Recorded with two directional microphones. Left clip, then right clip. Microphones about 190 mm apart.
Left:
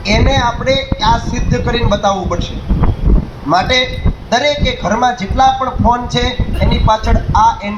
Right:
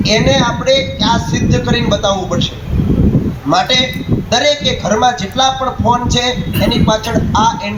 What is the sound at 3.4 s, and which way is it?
A man's voice, 35° left (ahead or behind).